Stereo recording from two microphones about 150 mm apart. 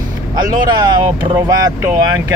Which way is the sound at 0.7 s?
30° right (ahead or behind).